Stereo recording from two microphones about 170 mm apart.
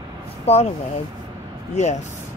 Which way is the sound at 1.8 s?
40° left (ahead or behind).